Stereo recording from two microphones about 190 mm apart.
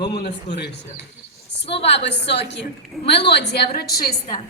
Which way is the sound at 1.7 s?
65° left (ahead or behind).